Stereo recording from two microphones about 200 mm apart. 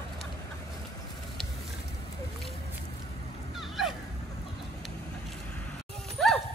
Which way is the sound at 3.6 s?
Centre (ahead or behind).